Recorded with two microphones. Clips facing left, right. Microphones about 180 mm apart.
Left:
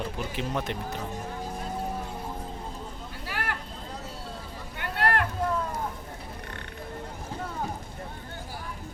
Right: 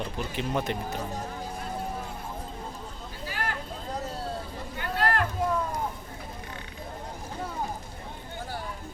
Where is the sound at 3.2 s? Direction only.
65° left (ahead or behind).